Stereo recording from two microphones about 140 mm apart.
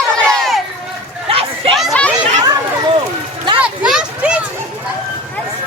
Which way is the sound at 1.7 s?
Centre (ahead or behind).